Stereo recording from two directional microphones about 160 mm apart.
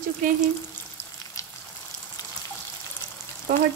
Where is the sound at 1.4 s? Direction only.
20° left (ahead or behind).